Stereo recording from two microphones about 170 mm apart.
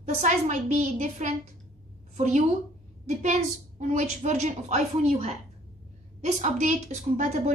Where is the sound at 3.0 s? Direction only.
45° right (ahead or behind).